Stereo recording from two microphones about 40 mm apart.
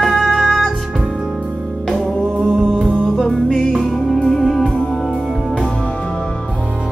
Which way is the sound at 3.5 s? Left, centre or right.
Centre.